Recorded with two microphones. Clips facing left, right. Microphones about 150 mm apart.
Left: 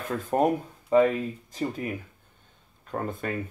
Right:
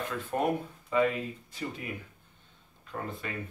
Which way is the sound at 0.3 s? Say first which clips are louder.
Left 6 dB; 40° left (ahead or behind).